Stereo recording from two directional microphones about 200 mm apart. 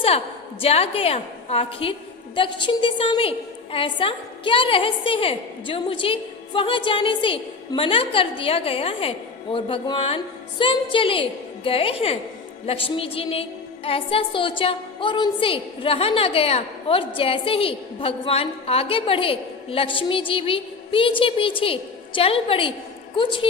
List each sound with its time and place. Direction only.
0.6 s a woman's voice: 30° left (ahead or behind)